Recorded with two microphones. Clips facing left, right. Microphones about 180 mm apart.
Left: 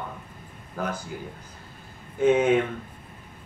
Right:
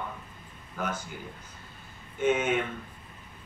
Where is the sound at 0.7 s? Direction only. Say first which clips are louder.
Left 3 dB; 35° left (ahead or behind).